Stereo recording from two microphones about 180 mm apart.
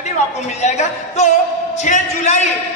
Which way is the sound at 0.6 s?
40° left (ahead or behind).